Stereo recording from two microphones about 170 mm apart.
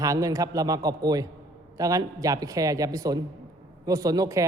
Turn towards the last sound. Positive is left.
turn(degrees=-20)  # may be behind; listen again after turning